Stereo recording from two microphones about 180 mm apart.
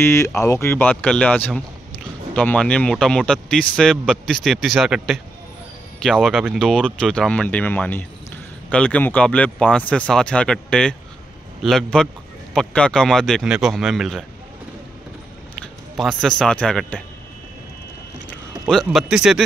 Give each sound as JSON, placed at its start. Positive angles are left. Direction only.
{"t": 0.0, "sound": "speech", "side_deg": 15}
{"t": 15.6, "sound": "a man's voice", "side_deg": 0}
{"t": 18.7, "sound": "speech", "side_deg": 0}